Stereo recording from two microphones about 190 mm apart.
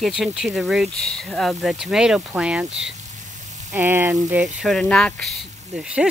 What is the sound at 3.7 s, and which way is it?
Speech, 10° right (ahead or behind).